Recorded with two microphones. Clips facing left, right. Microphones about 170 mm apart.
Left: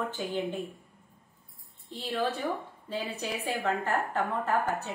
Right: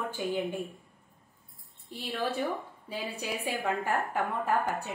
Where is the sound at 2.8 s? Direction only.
10° right (ahead or behind).